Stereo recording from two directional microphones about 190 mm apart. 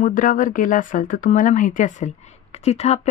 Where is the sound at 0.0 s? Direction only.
45° left (ahead or behind).